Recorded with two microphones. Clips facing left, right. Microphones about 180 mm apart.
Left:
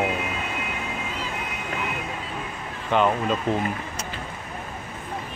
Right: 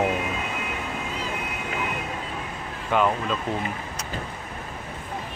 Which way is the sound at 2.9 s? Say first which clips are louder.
Left 1 dB; 10° right (ahead or behind).